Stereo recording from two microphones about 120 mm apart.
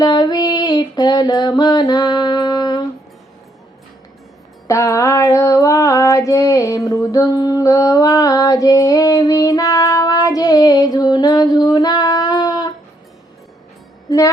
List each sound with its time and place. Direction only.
0.0 s female singing: 35° left (ahead or behind)
4.7 s female singing: 25° left (ahead or behind)